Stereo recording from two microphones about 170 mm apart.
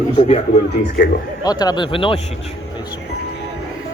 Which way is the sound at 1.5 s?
25° left (ahead or behind).